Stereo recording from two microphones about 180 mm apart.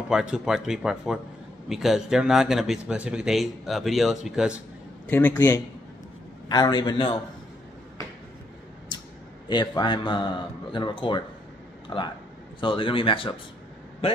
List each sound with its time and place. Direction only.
0.1 s a man's voice: 5° right (ahead or behind)
5.0 s speech: 10° left (ahead or behind)
6.5 s speech: 25° left (ahead or behind)
9.5 s speech: 25° left (ahead or behind)